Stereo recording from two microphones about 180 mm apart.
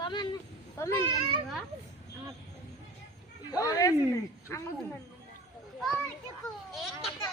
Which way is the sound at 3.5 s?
20° left (ahead or behind).